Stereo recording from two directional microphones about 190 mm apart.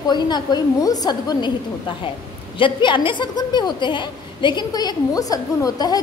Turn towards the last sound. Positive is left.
turn(degrees=20)  # may be behind; listen again after turning